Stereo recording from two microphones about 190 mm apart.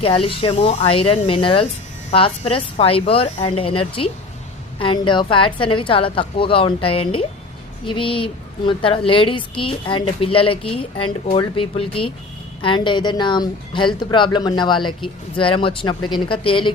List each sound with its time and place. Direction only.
0.0 s a woman's voice: 30° left (ahead or behind)